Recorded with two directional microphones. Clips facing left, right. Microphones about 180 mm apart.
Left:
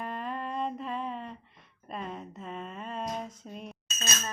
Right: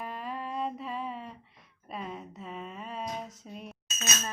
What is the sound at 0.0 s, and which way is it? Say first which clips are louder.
Music: left 2 dB; 5° right (ahead or behind).